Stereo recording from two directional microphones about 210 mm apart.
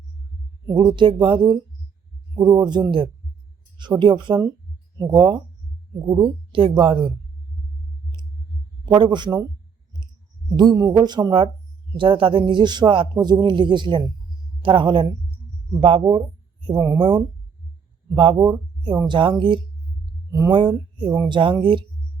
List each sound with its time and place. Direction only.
0.7 s speech: 20° right (ahead or behind)
6.5 s speech: 25° right (ahead or behind)
8.9 s speech: 20° right (ahead or behind)
10.6 s a woman's voice: 15° right (ahead or behind)